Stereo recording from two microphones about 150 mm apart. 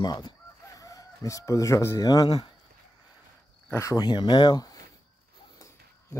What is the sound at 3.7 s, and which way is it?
Speech, 20° left (ahead or behind).